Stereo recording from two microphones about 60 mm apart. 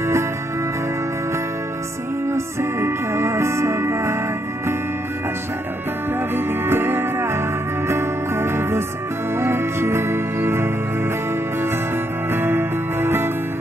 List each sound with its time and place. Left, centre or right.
2.2 s music: right
6.3 s music: right
12.3 s music: right